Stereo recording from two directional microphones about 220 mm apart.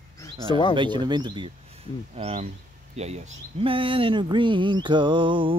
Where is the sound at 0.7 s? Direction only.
20° right (ahead or behind).